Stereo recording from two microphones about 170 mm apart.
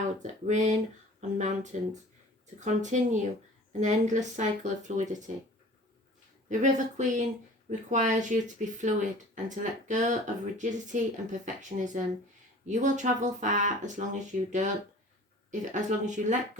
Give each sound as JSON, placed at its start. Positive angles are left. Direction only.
{"t": 0.2, "sound": "speech", "side_deg": -45}
{"t": 6.5, "sound": "speech", "side_deg": -45}
{"t": 15.7, "sound": "speech", "side_deg": -45}